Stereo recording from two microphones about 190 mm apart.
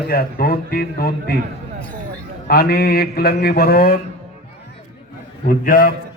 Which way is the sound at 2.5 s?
55° left (ahead or behind).